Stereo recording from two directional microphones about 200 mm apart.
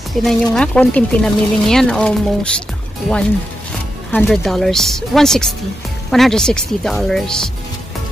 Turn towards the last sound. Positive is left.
turn(degrees=5)  # may be behind; listen again after turning